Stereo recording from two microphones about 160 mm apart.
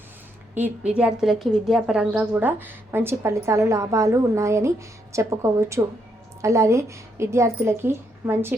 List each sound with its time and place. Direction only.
0.5 s speech: 10° right (ahead or behind)